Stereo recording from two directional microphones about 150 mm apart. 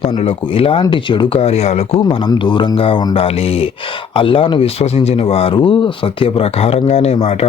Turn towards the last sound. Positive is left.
turn(degrees=40)  # may be behind; listen again after turning